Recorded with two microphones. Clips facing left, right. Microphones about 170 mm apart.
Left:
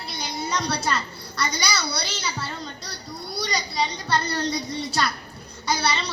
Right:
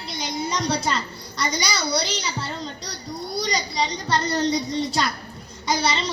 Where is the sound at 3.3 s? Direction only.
20° right (ahead or behind).